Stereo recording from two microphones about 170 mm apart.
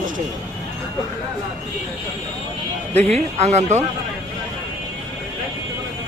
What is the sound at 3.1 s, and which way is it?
Speech, 40° right (ahead or behind).